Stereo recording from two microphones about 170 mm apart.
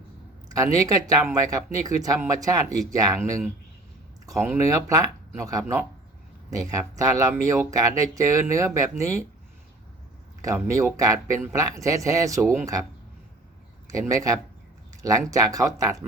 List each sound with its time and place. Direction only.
0.5 s speech: 20° right (ahead or behind)
10.4 s speech: 20° right (ahead or behind)
14.0 s speech: 20° right (ahead or behind)